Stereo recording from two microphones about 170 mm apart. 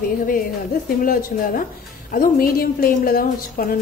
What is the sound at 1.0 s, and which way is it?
A woman's voice, 55° left (ahead or behind).